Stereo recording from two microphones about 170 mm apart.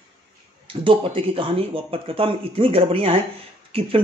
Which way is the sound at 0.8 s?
30° right (ahead or behind).